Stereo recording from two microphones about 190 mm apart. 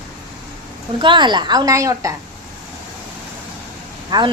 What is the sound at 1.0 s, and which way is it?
A woman's voice, 25° right (ahead or behind).